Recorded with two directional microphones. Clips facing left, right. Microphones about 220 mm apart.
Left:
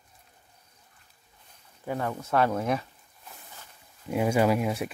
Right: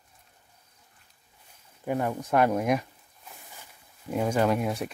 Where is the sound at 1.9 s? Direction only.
15° right (ahead or behind).